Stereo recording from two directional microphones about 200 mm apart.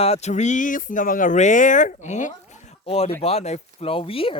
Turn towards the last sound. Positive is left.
turn(degrees=25)  # may be behind; listen again after turning